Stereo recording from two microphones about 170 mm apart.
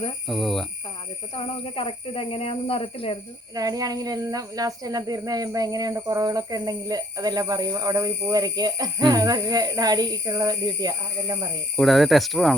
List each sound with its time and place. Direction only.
0.3 s speech: centre (ahead or behind)
1.4 s speech: 35° left (ahead or behind)
3.5 s speech: 20° right (ahead or behind)
11.8 s speech: centre (ahead or behind)